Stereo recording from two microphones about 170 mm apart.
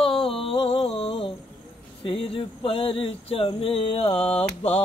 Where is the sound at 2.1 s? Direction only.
30° left (ahead or behind).